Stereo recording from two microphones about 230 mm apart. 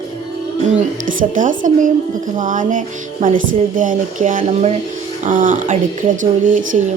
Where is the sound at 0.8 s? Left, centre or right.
Right.